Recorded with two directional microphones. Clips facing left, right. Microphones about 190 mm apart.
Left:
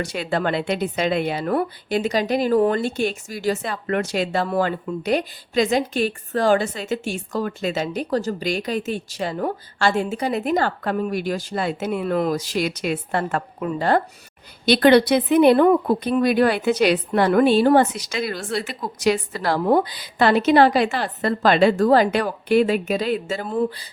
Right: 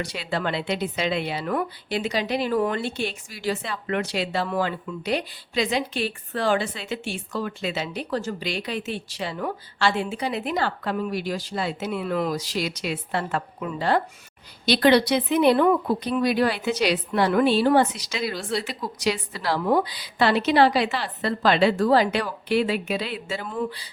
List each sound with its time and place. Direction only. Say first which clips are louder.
0.0 s speech: left 4 dB; 50° left (ahead or behind)